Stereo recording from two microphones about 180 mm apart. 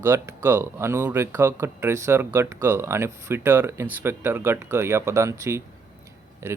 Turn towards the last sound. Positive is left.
turn(degrees=-15)  # may be behind; listen again after turning